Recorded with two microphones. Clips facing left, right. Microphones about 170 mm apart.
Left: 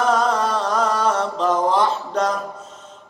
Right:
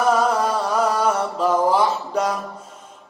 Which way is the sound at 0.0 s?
10° right (ahead or behind).